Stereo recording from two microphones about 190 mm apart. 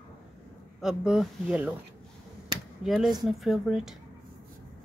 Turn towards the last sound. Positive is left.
turn(degrees=-5)  # may be behind; listen again after turning